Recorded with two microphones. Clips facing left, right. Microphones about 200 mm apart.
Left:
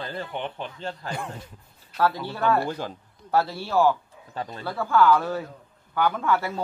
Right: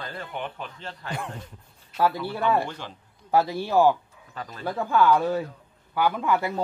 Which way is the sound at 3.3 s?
15° right (ahead or behind).